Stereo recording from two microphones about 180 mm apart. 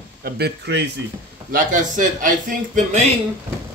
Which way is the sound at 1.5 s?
45° right (ahead or behind).